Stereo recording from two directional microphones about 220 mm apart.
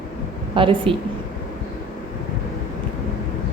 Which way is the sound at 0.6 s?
25° right (ahead or behind).